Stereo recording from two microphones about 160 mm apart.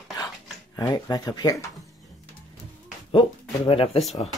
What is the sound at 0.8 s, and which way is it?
Speech, 20° left (ahead or behind).